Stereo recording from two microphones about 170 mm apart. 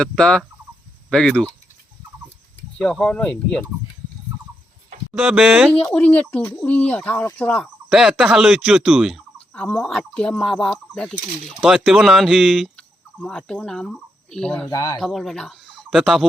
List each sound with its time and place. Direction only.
0.0 s speech: 5° left (ahead or behind)
2.7 s speech: 5° left (ahead or behind)
5.1 s speech: 5° right (ahead or behind)
5.9 s speech: 10° left (ahead or behind)
9.5 s speech: 10° left (ahead or behind)
14.7 s speech: 20° left (ahead or behind)
14.9 s speech: centre (ahead or behind)